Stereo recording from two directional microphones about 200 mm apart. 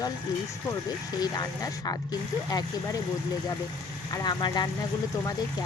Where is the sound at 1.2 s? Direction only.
20° left (ahead or behind).